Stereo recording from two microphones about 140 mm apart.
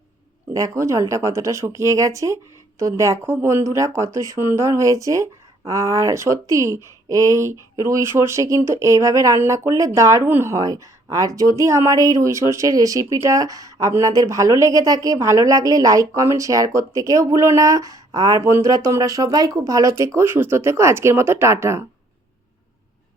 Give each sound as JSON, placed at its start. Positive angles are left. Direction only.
{"t": 0.5, "sound": "speech", "side_deg": -25}